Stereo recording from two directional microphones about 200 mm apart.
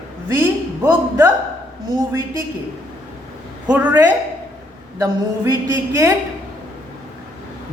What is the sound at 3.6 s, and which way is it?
A man's voice, 10° right (ahead or behind).